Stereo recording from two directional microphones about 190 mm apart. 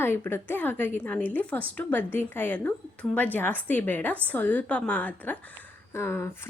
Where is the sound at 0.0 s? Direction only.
10° left (ahead or behind).